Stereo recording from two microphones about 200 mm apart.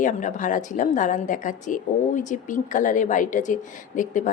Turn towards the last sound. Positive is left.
turn(degrees=40)  # may be behind; listen again after turning